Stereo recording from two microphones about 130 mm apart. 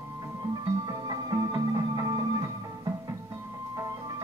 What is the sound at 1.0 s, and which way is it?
Music, 30° right (ahead or behind).